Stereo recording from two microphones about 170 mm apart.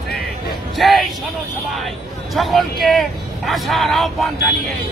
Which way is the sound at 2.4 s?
Centre (ahead or behind).